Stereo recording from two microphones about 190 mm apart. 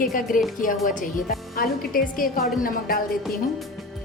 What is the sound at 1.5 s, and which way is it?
Speech, 50° left (ahead or behind).